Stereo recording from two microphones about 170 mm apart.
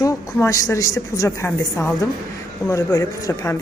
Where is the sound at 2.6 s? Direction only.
20° left (ahead or behind).